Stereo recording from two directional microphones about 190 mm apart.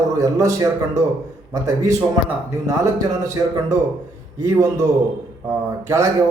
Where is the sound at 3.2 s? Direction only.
15° right (ahead or behind).